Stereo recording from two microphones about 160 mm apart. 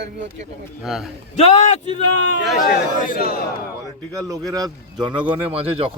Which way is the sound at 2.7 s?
65° left (ahead or behind).